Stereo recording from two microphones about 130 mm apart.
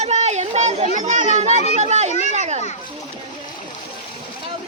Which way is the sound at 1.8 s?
60° right (ahead or behind).